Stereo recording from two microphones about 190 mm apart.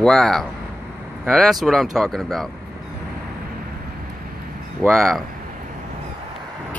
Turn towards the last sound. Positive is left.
turn(degrees=0)  # may be behind; listen again after turning